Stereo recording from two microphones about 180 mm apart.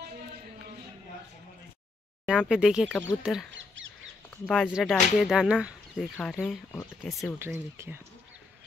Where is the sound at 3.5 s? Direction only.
90° right.